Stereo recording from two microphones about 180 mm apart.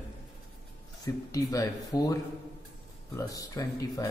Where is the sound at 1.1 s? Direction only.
20° left (ahead or behind).